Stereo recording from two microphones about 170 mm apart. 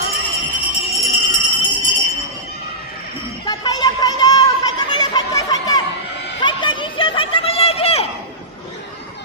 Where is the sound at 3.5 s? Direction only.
25° left (ahead or behind).